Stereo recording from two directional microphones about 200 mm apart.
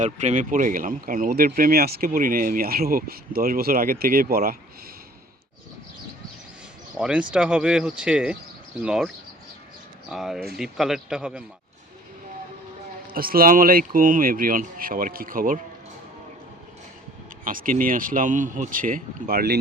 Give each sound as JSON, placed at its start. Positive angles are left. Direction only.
{"t": 0.0, "sound": "speech", "side_deg": -35}
{"t": 7.0, "sound": "speech", "side_deg": -5}
{"t": 13.1, "sound": "speech", "side_deg": -45}
{"t": 17.4, "sound": "speech", "side_deg": -45}